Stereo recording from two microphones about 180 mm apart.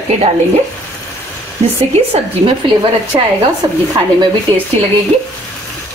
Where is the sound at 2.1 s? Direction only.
30° right (ahead or behind).